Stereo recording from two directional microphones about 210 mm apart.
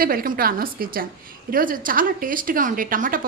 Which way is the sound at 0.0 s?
45° right (ahead or behind).